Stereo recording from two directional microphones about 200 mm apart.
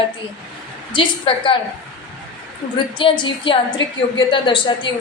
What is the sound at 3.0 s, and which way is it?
A woman's voice, 25° left (ahead or behind).